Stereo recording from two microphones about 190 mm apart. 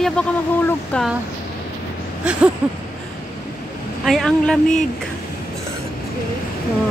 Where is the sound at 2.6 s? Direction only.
5° right (ahead or behind).